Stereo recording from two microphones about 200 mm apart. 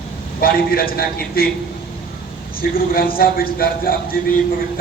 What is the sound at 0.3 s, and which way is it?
A man's voice, 45° left (ahead or behind).